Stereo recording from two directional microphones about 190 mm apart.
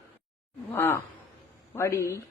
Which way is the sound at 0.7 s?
10° left (ahead or behind).